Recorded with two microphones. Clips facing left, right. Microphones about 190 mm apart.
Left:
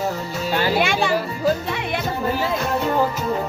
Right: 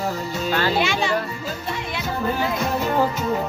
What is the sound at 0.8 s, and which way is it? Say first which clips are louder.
Speech: left 2 dB; 55° left (ahead or behind).